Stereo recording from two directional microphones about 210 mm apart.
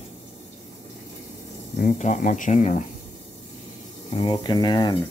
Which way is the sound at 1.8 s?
35° left (ahead or behind).